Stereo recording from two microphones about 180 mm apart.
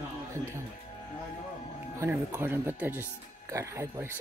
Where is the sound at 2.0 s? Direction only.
15° right (ahead or behind).